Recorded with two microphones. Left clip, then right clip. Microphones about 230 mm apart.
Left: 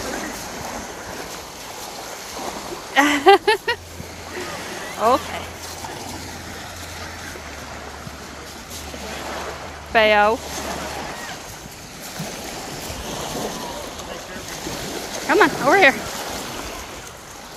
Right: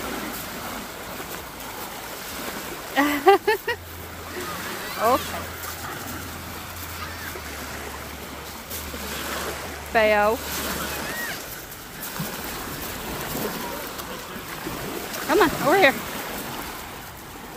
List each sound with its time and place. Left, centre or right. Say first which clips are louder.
2.9 s speech: left 4 dB; left
5.0 s speech: left 3 dB; centre
9.9 s speech: left 4 dB; centre
15.2 s speech: left 4 dB; centre